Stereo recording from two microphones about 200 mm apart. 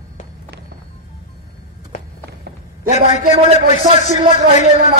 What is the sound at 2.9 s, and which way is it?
A man's voice, 35° left (ahead or behind).